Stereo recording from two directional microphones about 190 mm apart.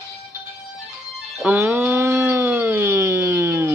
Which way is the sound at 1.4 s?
10° right (ahead or behind).